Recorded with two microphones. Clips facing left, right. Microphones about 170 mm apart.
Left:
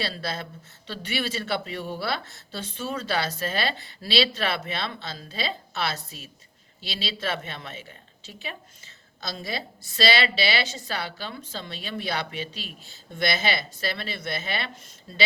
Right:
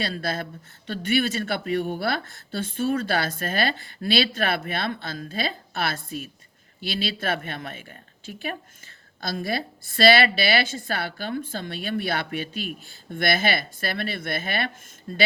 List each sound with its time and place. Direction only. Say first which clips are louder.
0.0 s a woman's voice: right 3 dB; 50° right (ahead or behind)